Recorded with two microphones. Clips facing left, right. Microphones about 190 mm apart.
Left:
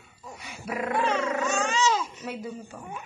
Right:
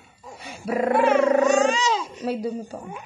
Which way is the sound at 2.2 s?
35° right (ahead or behind).